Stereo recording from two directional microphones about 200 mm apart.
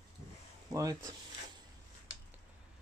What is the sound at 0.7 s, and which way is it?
Speech, 15° right (ahead or behind).